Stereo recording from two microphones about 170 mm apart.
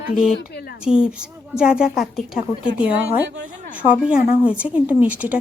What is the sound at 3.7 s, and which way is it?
Speech, 10° right (ahead or behind).